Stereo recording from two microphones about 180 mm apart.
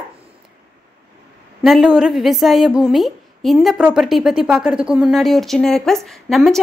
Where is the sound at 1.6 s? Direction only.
Centre (ahead or behind).